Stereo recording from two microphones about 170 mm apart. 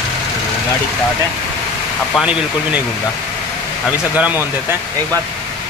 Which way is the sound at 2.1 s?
5° right (ahead or behind).